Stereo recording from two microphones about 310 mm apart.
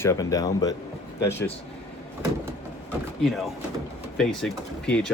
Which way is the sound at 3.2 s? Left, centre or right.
Centre.